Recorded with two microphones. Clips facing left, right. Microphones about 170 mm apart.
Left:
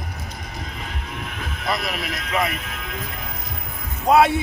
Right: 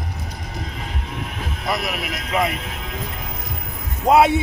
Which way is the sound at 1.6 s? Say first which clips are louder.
Right 1 dB; 15° right (ahead or behind).